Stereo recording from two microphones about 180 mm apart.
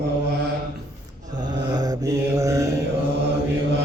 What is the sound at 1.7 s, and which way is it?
Mantra, 20° right (ahead or behind).